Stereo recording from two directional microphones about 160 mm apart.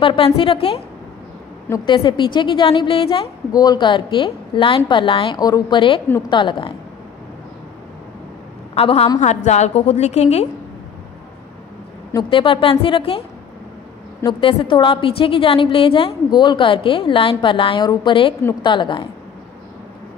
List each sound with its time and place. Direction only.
0.0 s a woman's voice: 35° left (ahead or behind)
1.9 s a woman's voice: 30° left (ahead or behind)
8.7 s a woman's voice: 40° left (ahead or behind)
12.1 s a woman's voice: 30° left (ahead or behind)
14.2 s a woman's voice: 30° left (ahead or behind)